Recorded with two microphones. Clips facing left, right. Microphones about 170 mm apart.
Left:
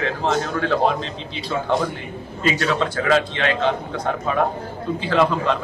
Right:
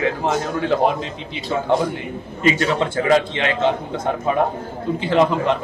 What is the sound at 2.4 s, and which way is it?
A man's voice, 20° right (ahead or behind).